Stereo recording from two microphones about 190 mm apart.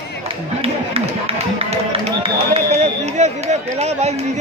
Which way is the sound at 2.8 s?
35° right (ahead or behind).